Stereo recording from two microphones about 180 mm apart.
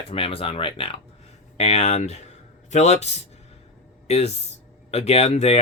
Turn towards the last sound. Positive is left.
turn(degrees=35)  # may be behind; listen again after turning